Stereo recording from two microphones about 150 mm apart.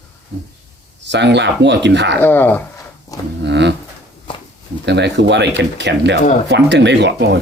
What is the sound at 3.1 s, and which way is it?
Speech, 25° left (ahead or behind).